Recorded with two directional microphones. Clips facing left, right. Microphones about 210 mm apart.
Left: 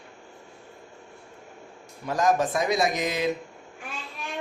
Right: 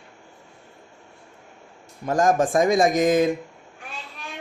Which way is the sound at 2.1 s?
50° right (ahead or behind).